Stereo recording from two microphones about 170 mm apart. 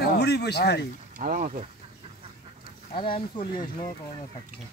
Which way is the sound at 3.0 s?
30° left (ahead or behind).